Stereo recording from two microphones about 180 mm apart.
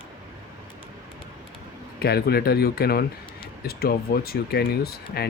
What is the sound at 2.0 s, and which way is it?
Speech, 60° left (ahead or behind).